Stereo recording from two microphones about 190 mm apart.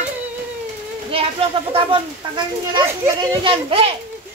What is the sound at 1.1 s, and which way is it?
Speech, 30° right (ahead or behind).